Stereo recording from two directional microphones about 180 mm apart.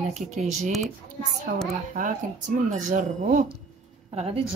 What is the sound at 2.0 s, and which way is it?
Speech, 45° right (ahead or behind).